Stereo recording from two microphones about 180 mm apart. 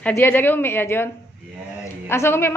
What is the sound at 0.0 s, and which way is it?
A man's voice, 10° left (ahead or behind).